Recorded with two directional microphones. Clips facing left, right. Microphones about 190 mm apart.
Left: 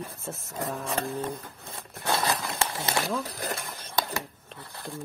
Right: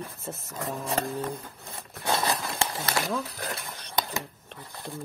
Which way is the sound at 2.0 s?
20° right (ahead or behind).